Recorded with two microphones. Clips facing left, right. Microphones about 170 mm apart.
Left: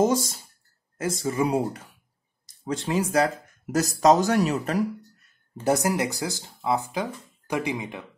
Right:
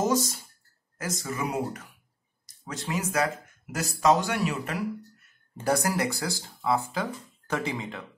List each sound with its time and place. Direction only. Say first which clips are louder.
0.0 s speech: left 4 dB; 30° left (ahead or behind)
5.6 s speech: left 3 dB; 20° left (ahead or behind)